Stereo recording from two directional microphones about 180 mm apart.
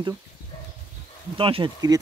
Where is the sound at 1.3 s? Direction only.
30° right (ahead or behind).